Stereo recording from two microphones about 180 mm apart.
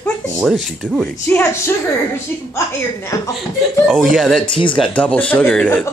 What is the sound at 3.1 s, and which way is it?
Speech, 20° left (ahead or behind).